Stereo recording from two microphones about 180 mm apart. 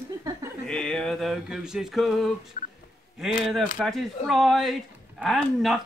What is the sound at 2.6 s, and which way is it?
Speech, 45° left (ahead or behind).